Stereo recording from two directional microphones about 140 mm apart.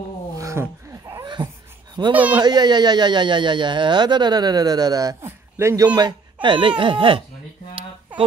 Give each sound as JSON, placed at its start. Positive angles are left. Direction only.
{"t": 0.4, "sound": "a sound", "side_deg": -20}
{"t": 2.1, "sound": "a man's voice", "side_deg": -10}
{"t": 2.4, "sound": "speech", "side_deg": -30}